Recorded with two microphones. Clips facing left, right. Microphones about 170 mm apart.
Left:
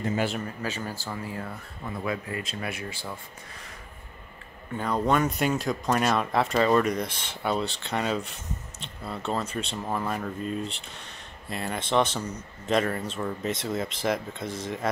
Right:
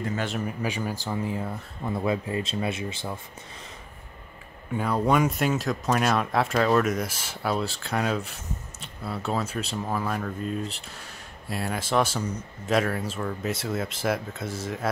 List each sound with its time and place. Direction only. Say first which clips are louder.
0.4 s speech: right 3 dB; 15° right (ahead or behind)
4.7 s speech: right 2 dB; 5° right (ahead or behind)